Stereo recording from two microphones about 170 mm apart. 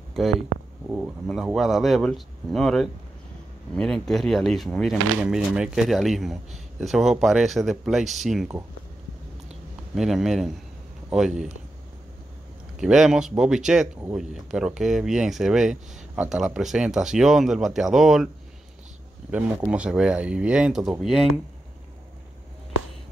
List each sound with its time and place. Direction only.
0.2 s speech: centre (ahead or behind)
0.5 s a sound: 55° right (ahead or behind)
0.8 s speech: 10° right (ahead or behind)
9.9 s speech: centre (ahead or behind)
12.7 s speech: 5° right (ahead or behind)
19.3 s speech: 5° right (ahead or behind)